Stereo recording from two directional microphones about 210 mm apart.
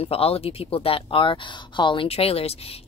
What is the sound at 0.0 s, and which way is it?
Speech, 30° left (ahead or behind).